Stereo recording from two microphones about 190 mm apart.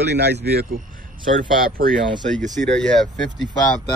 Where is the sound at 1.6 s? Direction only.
50° right (ahead or behind).